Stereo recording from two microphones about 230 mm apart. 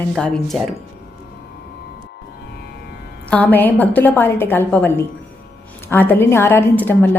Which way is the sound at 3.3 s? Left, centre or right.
Centre.